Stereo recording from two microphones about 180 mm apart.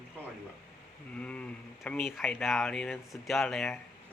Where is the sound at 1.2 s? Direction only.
5° left (ahead or behind).